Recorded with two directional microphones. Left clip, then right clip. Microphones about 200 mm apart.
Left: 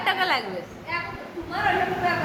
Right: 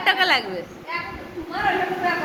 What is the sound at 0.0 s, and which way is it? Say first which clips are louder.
Chatter: right 4 dB; 10° right (ahead or behind).